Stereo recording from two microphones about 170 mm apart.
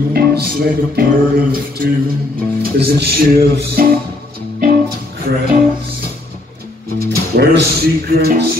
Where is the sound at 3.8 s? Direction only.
60° right (ahead or behind).